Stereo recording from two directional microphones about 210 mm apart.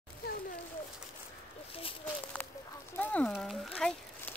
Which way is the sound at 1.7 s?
25° left (ahead or behind).